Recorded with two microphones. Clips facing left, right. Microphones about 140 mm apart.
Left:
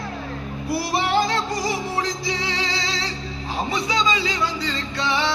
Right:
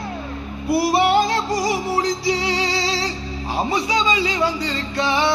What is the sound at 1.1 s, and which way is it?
Music, 30° right (ahead or behind).